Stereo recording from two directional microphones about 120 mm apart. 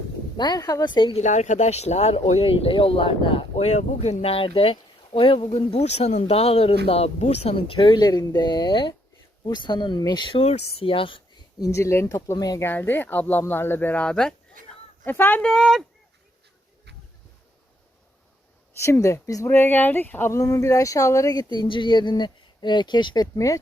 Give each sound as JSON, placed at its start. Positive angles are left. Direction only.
{"t": 0.3, "sound": "speech", "side_deg": 35}
{"t": 1.1, "sound": "speech", "side_deg": 80}
{"t": 3.7, "sound": "speech", "side_deg": 75}
{"t": 10.4, "sound": "speech", "side_deg": 60}
{"t": 11.6, "sound": "speech", "side_deg": 25}
{"t": 12.6, "sound": "speech", "side_deg": 15}
{"t": 15.4, "sound": "speech", "side_deg": 0}
{"t": 18.8, "sound": "speech", "side_deg": 25}
{"t": 19.5, "sound": "speech", "side_deg": 15}